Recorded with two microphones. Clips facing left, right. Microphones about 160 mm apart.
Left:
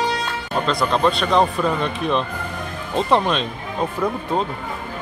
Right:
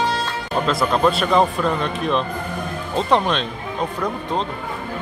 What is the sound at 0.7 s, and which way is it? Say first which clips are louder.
Speech: right 1 dB; 5° right (ahead or behind).